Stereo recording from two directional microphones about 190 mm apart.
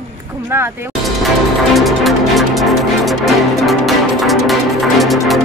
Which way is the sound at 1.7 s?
Centre (ahead or behind).